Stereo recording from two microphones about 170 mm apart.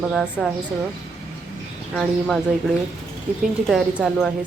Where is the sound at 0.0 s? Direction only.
5° right (ahead or behind).